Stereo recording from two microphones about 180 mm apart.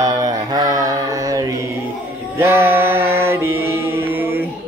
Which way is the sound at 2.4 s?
15° right (ahead or behind).